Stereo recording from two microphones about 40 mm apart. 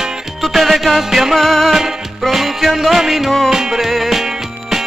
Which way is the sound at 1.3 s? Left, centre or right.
Centre.